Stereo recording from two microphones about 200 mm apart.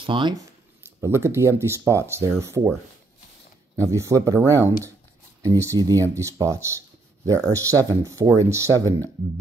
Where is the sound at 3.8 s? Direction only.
15° right (ahead or behind).